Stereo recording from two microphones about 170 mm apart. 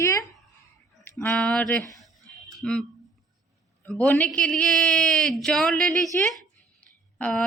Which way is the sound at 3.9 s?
10° left (ahead or behind).